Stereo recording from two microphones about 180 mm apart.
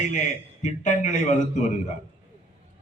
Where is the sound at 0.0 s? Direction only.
45° left (ahead or behind).